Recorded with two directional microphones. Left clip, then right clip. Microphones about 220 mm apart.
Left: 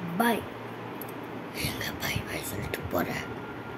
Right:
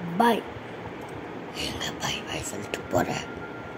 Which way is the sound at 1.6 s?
Centre (ahead or behind).